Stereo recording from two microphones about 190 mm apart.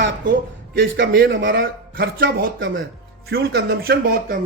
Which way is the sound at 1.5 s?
50° right (ahead or behind).